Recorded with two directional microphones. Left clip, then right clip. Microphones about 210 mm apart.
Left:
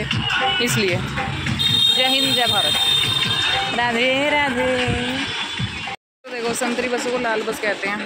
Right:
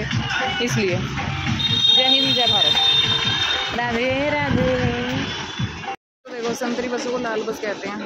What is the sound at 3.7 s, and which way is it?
Speech, centre (ahead or behind).